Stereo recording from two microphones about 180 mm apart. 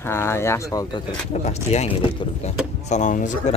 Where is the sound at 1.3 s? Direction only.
35° left (ahead or behind).